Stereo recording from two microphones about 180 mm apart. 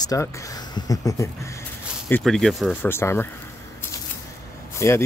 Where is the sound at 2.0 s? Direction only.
5° left (ahead or behind).